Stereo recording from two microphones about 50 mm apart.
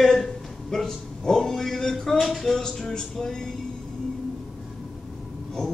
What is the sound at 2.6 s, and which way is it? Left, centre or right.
Speech, centre.